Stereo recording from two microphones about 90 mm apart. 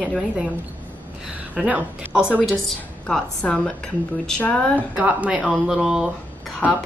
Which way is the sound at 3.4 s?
10° left (ahead or behind).